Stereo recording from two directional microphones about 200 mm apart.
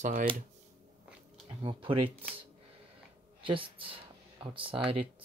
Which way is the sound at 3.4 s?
25° right (ahead or behind).